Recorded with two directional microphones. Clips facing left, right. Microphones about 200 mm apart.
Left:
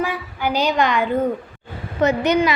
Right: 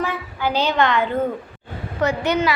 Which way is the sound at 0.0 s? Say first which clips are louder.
Left 1 dB; 15° left (ahead or behind).